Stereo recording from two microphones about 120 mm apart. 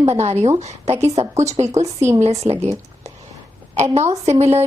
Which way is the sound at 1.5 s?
65° right (ahead or behind).